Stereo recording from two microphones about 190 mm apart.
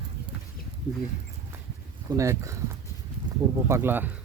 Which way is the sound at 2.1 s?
15° right (ahead or behind).